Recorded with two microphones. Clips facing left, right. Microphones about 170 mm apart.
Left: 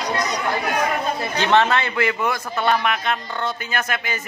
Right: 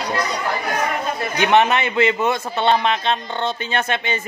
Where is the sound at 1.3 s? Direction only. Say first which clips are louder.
Right 2 dB; 15° right (ahead or behind).